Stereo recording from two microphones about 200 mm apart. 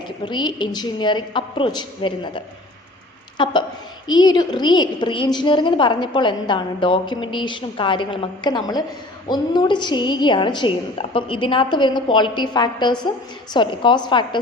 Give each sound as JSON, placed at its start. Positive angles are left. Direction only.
{"t": 0.3, "sound": "a woman's voice", "side_deg": 25}